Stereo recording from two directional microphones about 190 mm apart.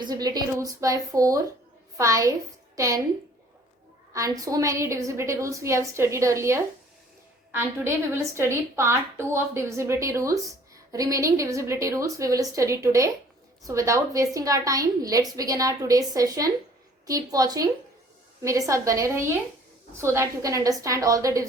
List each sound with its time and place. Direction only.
0.0 s a woman's voice: 20° right (ahead or behind)
4.1 s a woman's voice: 15° right (ahead or behind)
7.9 s a woman's voice: 15° right (ahead or behind)